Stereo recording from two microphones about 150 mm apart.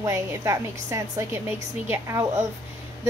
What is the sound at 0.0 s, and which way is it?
A woman's voice, 20° right (ahead or behind).